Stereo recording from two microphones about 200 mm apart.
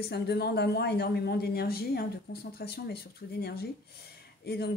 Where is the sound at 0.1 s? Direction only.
55° left (ahead or behind).